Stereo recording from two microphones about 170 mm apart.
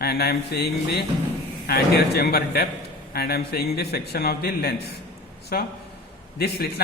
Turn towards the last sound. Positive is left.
turn(degrees=70)  # may be behind; listen again after turning